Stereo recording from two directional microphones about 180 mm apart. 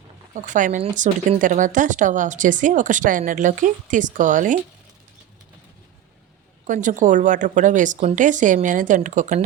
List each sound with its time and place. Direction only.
0.3 s speech: 45° right (ahead or behind)
6.7 s speech: 45° right (ahead or behind)